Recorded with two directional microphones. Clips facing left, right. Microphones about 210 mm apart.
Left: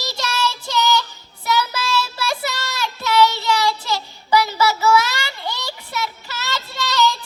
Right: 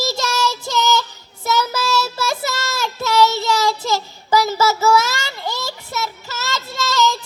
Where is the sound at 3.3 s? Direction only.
45° right (ahead or behind).